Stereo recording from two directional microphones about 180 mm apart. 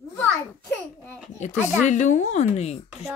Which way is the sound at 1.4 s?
40° left (ahead or behind).